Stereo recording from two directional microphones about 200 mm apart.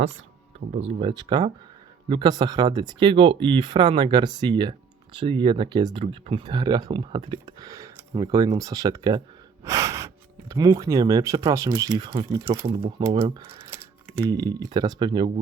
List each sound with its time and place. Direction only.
0.8 s speech: 30° right (ahead or behind)
9.6 s gasp: 15° right (ahead or behind)
10.5 s speech: 20° right (ahead or behind)